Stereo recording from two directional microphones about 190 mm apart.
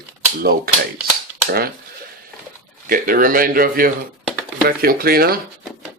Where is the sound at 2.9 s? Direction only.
50° right (ahead or behind).